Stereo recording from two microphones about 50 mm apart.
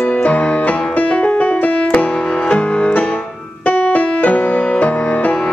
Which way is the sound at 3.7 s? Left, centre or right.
Left.